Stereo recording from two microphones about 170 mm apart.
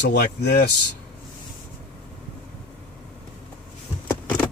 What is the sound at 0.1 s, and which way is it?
Speech, 75° left (ahead or behind).